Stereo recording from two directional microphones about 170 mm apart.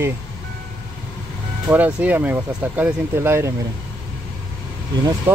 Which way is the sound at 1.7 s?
10° right (ahead or behind).